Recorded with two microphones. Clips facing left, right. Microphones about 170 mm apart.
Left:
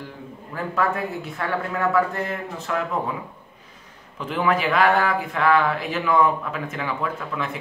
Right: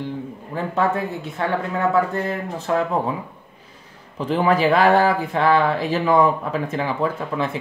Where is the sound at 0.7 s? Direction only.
25° right (ahead or behind).